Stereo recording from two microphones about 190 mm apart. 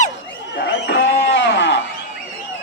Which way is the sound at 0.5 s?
70° left (ahead or behind).